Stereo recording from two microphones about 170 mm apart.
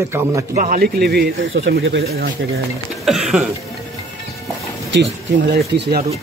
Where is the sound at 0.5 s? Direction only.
50° right (ahead or behind); by 2.3 s 65° right (ahead or behind).